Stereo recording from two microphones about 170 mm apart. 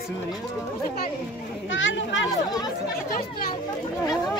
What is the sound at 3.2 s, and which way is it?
Speech, 60° left (ahead or behind).